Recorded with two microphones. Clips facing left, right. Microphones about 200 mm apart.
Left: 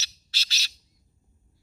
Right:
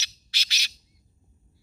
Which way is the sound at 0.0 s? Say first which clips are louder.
Right 1 dB; 15° right (ahead or behind).